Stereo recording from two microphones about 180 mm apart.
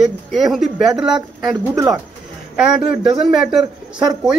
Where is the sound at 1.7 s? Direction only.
15° right (ahead or behind).